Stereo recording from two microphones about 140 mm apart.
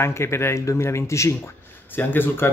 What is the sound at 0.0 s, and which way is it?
A man's voice, 20° left (ahead or behind).